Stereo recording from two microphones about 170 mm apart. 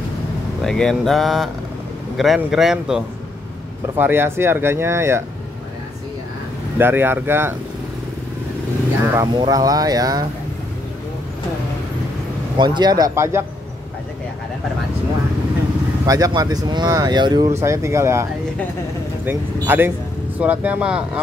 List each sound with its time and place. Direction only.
0.7 s speech: 5° left (ahead or behind)
3.9 s speech: 15° right (ahead or behind)
6.8 s speech: 15° right (ahead or behind)
9.0 s speech: 20° right (ahead or behind)
12.5 s speech: 25° right (ahead or behind)
16.1 s speech: 20° right (ahead or behind)
19.2 s speech: 10° right (ahead or behind)